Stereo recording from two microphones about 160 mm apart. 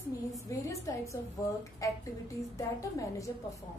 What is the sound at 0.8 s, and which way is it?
A woman's voice, 20° left (ahead or behind).